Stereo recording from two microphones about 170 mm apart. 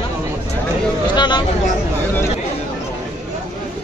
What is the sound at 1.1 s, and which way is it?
Speech, 25° left (ahead or behind).